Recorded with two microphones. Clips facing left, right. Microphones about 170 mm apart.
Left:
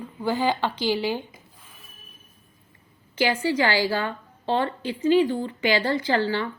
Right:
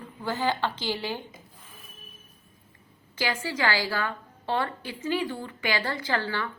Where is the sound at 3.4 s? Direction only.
20° left (ahead or behind).